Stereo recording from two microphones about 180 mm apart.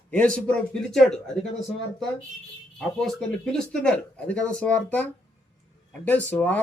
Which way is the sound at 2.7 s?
Centre (ahead or behind).